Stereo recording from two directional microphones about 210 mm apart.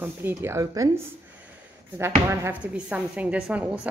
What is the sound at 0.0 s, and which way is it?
Speech, 10° right (ahead or behind).